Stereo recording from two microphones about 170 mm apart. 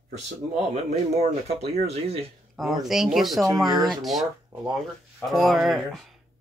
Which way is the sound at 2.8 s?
Centre (ahead or behind).